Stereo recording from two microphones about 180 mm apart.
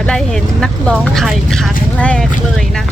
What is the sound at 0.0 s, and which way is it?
Speech, 5° left (ahead or behind).